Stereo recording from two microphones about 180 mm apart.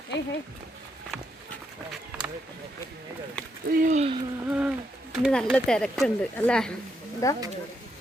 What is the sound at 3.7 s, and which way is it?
Speech, 45° right (ahead or behind).